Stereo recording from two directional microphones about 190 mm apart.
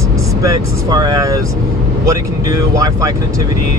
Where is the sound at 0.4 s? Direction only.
20° right (ahead or behind).